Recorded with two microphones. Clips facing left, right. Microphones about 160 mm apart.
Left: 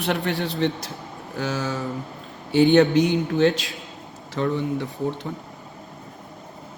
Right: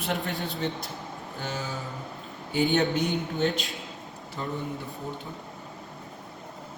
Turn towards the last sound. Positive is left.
turn(degrees=85)